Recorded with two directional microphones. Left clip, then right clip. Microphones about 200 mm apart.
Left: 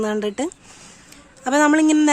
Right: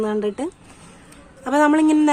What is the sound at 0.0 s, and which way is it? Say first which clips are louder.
Speech: even; 40° left (ahead or behind).